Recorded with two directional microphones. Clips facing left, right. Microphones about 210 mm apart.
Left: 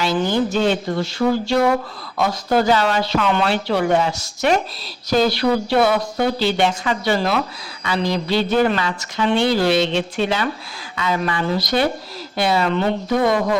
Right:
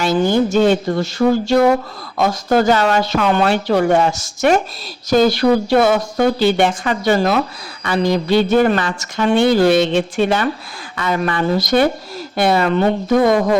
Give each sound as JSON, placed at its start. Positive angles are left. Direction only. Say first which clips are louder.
{"t": 0.0, "sound": "a woman's voice", "louder": "right 4 dB", "side_deg": -50}